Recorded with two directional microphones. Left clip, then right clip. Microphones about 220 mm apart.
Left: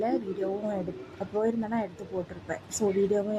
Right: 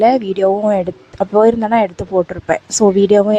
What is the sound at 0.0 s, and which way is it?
Speech, 45° right (ahead or behind).